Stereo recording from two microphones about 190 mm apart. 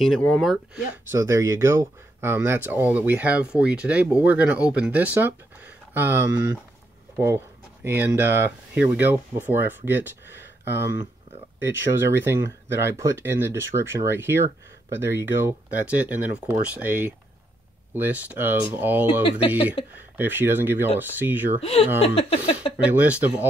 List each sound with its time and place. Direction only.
0.0 s speech: centre (ahead or behind)
1.1 s speech: 15° right (ahead or behind)
12.2 s speech: 10° right (ahead or behind)
21.6 s speech: 30° left (ahead or behind)
22.8 s speech: 5° right (ahead or behind)